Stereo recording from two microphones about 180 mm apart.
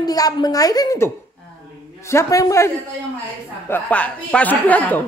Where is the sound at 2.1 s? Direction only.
15° left (ahead or behind).